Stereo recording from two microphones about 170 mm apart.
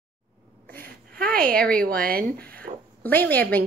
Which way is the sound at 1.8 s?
60° right (ahead or behind).